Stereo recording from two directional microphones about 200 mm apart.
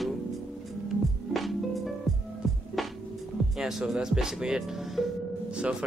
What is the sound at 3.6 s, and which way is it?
Speech, centre (ahead or behind).